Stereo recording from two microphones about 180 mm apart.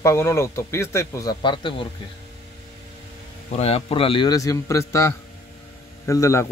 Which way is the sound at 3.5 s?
35° left (ahead or behind).